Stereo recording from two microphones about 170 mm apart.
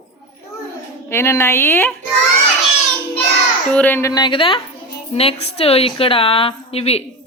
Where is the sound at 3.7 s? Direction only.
10° left (ahead or behind); by 7.0 s 35° left (ahead or behind).